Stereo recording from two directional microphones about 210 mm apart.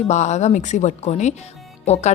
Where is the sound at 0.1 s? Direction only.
35° left (ahead or behind).